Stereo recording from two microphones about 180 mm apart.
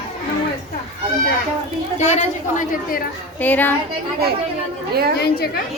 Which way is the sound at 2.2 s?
45° left (ahead or behind).